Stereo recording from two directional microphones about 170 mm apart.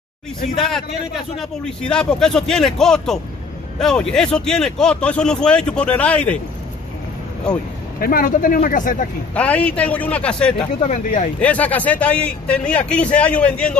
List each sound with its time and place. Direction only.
0.6 s a man's voice: centre (ahead or behind)
8.0 s speech: 55° left (ahead or behind)
9.3 s a man's voice: 10° left (ahead or behind)
11.1 s speech: 50° left (ahead or behind)
11.3 s a man's voice: 10° left (ahead or behind)